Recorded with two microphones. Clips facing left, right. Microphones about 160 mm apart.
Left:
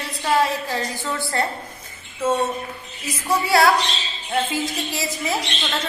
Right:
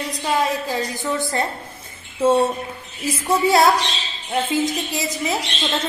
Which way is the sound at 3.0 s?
25° right (ahead or behind).